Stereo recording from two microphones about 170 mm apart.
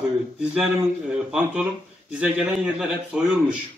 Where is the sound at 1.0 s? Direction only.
5° right (ahead or behind).